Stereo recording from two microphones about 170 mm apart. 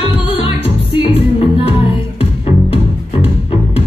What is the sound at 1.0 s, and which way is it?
Music, 35° left (ahead or behind).